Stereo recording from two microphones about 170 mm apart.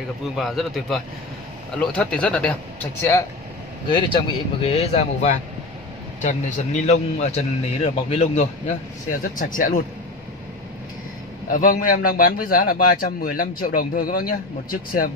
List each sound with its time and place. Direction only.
0.4 s a man's voice: centre (ahead or behind); by 3.3 s 15° left (ahead or behind)
3.9 s speech: 30° left (ahead or behind)
9.4 s speech: 55° left (ahead or behind)
11.5 s a man's voice: 55° left (ahead or behind)